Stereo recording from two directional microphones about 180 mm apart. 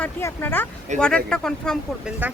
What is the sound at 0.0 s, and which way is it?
Speech, 15° left (ahead or behind).